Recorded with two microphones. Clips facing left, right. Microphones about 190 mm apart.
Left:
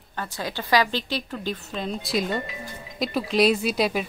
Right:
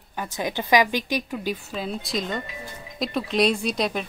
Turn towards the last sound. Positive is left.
turn(degrees=5)  # may be behind; listen again after turning